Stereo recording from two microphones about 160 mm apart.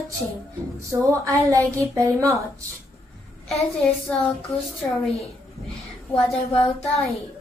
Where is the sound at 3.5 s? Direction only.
Centre (ahead or behind).